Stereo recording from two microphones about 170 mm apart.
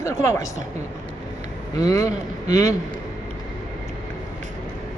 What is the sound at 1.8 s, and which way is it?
Speech, 20° left (ahead or behind).